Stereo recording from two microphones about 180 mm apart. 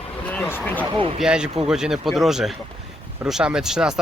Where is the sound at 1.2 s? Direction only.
5° right (ahead or behind).